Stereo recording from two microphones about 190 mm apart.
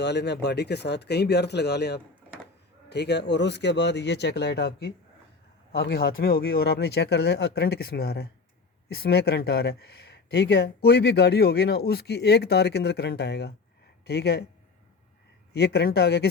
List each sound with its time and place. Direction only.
0.0 s speech: 60° left (ahead or behind)
15.5 s speech: 60° left (ahead or behind)